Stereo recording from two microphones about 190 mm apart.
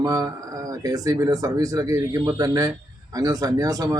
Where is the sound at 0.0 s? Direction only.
20° right (ahead or behind).